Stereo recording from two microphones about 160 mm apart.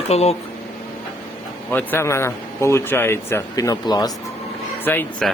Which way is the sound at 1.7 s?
15° left (ahead or behind).